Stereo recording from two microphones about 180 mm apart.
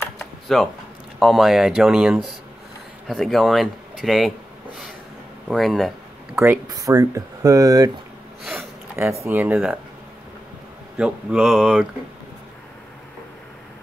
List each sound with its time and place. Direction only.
0.5 s speech: centre (ahead or behind)
5.5 s speech: centre (ahead or behind)
6.4 s speech: 15° right (ahead or behind)
8.9 s speech: 15° right (ahead or behind)
11.0 s speech: 5° right (ahead or behind)